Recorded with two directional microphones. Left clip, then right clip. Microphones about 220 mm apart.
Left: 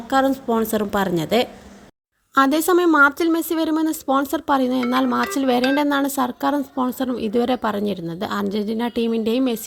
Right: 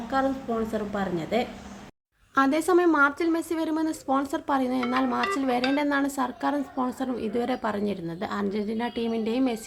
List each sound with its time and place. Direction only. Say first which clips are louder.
0.1 s a woman's voice: left 8 dB; 45° left (ahead or behind)